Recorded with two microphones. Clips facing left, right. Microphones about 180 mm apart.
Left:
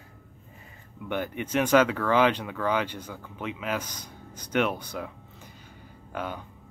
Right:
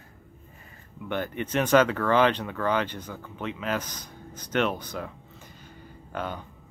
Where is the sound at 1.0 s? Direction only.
10° left (ahead or behind).